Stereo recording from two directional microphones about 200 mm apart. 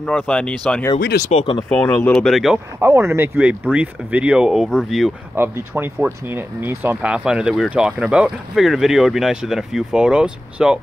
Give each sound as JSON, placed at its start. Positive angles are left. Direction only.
{"t": 0.0, "sound": "speech", "side_deg": 5}
{"t": 1.3, "sound": "speech", "side_deg": 25}
{"t": 1.7, "sound": "speech", "side_deg": 10}